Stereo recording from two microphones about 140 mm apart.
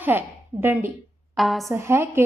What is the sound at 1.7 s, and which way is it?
Speech, 20° right (ahead or behind).